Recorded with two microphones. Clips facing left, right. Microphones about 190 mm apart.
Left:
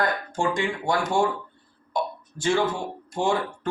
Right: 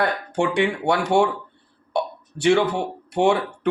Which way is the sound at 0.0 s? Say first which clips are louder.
Right 3 dB; 65° right (ahead or behind).